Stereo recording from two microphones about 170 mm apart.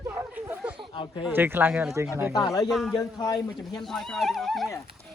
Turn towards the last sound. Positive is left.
turn(degrees=0)  # may be behind; listen again after turning